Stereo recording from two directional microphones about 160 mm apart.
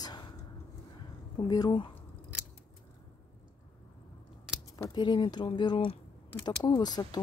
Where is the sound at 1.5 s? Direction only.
25° left (ahead or behind).